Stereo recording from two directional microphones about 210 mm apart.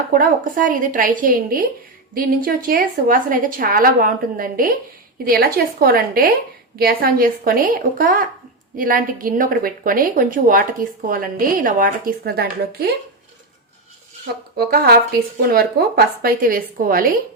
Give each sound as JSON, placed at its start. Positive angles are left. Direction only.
{"t": 0.1, "sound": "a woman's voice", "side_deg": -40}
{"t": 14.5, "sound": "speech", "side_deg": -50}